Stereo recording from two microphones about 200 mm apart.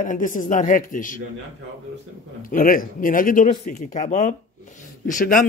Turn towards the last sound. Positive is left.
turn(degrees=45)  # may be behind; listen again after turning